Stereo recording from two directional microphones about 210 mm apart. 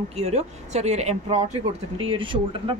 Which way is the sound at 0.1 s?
30° right (ahead or behind).